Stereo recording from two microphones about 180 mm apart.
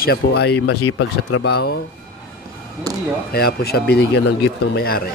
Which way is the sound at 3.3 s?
60° left (ahead or behind).